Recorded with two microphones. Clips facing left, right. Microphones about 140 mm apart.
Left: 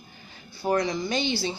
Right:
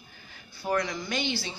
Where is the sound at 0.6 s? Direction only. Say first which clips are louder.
Left 4 dB; 30° left (ahead or behind).